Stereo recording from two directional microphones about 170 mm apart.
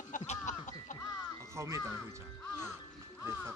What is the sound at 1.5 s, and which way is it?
Speech, 15° right (ahead or behind).